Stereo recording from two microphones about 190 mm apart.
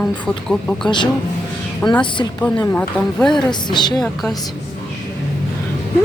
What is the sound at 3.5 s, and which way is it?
Speech, 25° left (ahead or behind).